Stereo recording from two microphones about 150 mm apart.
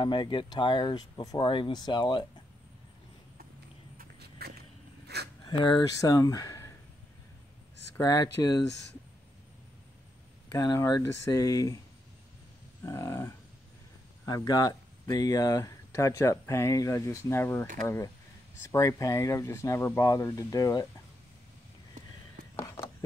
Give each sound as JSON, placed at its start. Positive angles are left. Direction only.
{"t": 0.0, "sound": "speech", "side_deg": 30}
{"t": 4.0, "sound": "a sound", "side_deg": -90}
{"t": 5.5, "sound": "speech", "side_deg": 30}
{"t": 8.0, "sound": "speech", "side_deg": 25}
{"t": 10.6, "sound": "speech", "side_deg": 25}
{"t": 12.8, "sound": "livestock", "side_deg": 20}
{"t": 14.2, "sound": "speech", "side_deg": 25}
{"t": 22.6, "sound": "a sound", "side_deg": 25}